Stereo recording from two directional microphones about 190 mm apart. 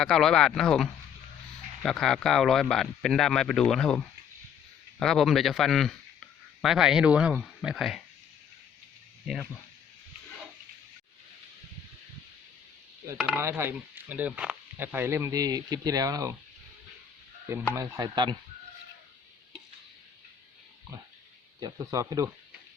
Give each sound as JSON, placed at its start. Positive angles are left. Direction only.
{"t": 0.0, "sound": "a man's voice", "side_deg": 5}
{"t": 9.2, "sound": "speech", "side_deg": 0}
{"t": 13.1, "sound": "speech", "side_deg": -5}
{"t": 17.5, "sound": "speech", "side_deg": -15}
{"t": 21.6, "sound": "speech", "side_deg": -20}